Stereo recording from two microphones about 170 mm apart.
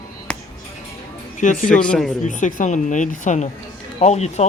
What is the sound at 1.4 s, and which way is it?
Speech, 55° left (ahead or behind).